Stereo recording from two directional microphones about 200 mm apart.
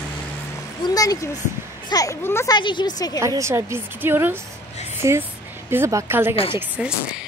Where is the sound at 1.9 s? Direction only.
15° left (ahead or behind).